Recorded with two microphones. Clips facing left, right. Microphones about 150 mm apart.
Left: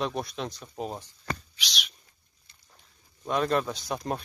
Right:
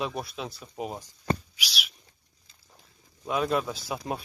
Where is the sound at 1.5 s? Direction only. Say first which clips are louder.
Right 1 dB; 5° right (ahead or behind).